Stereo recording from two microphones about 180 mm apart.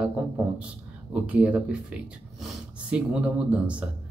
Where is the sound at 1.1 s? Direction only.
5° right (ahead or behind).